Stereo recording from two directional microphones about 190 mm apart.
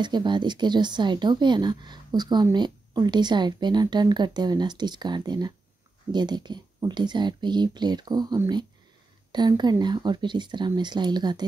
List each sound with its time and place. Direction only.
0.0 s a woman's voice: 25° right (ahead or behind)